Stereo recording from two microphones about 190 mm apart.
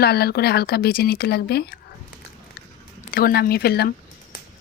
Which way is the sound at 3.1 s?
50° left (ahead or behind).